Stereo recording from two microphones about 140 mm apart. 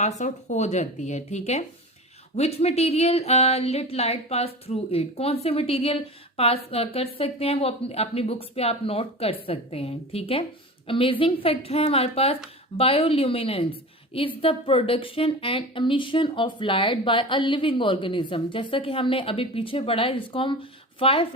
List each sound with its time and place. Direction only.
0.2 s speech: 55° left (ahead or behind); by 21.2 s 40° left (ahead or behind)